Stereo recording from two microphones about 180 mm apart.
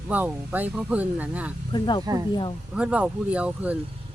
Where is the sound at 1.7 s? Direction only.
25° left (ahead or behind).